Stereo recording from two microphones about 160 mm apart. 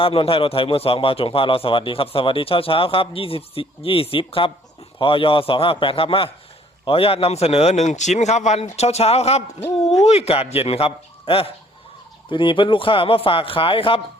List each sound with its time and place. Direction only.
0.0 s a man's voice: 35° left (ahead or behind)